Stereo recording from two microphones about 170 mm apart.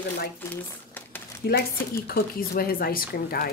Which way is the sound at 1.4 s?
60° left (ahead or behind).